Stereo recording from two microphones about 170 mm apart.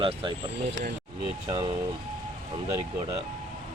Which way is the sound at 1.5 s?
20° right (ahead or behind).